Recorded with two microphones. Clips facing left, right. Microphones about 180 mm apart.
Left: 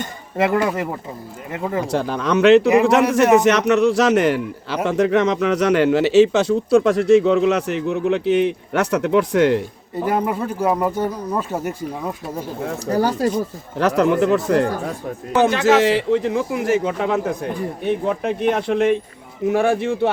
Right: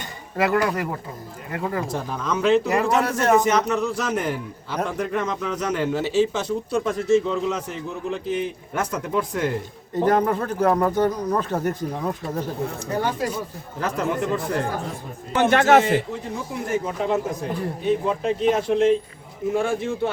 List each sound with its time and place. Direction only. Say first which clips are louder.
0.3 s speech: left 3 dB; 25° left (ahead or behind)
1.9 s a man's voice: left 7 dB; 80° left
10.0 s speech: right 1 dB; 10° left (ahead or behind)
12.9 s speech: left 7 dB; 40° left (ahead or behind)
13.7 s a man's voice: left 8 dB; 75° left (ahead or behind)
15.4 s a man's voice: left 1 dB; 55° right (ahead or behind)
15.8 s speech: left 6 dB; 90° left
17.8 s a man's voice: left 1 dB; 60° left (ahead or behind)